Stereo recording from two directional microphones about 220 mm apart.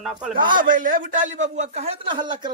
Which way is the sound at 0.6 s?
40° right (ahead or behind).